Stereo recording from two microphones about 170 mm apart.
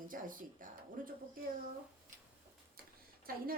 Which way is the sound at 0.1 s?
55° right (ahead or behind).